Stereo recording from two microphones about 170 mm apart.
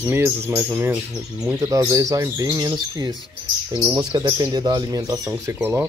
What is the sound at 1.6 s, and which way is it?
Speech, 15° right (ahead or behind).